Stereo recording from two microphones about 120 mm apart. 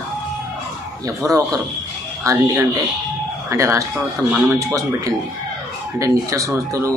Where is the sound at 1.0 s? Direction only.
30° right (ahead or behind).